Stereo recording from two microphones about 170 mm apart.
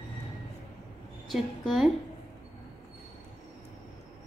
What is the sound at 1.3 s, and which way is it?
Speech, centre (ahead or behind).